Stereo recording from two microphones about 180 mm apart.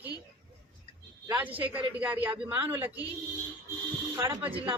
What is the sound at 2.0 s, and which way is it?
Speech, 10° right (ahead or behind).